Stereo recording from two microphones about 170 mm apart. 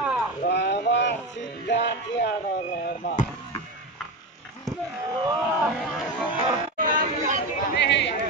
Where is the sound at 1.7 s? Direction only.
90° left.